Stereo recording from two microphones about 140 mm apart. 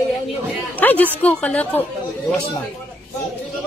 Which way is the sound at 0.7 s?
10° left (ahead or behind).